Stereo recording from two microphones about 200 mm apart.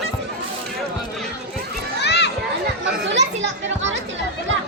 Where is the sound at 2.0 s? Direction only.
60° left (ahead or behind).